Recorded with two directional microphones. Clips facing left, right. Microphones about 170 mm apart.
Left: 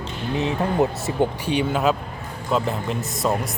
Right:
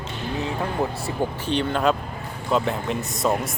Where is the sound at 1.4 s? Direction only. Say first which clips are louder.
Right 3 dB; 10° left (ahead or behind).